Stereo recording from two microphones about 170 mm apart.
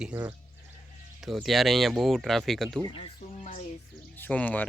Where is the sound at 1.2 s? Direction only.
Centre (ahead or behind).